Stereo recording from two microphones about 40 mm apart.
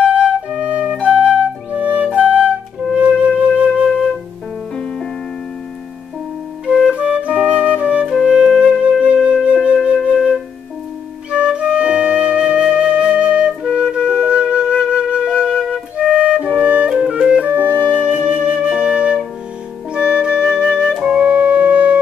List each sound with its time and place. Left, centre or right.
0.0 s flute: right
6.6 s music: right
9.0 s flute: right
11.2 s flute: right
13.7 s wind instrument: right
17.1 s flute: right
21.2 s music: right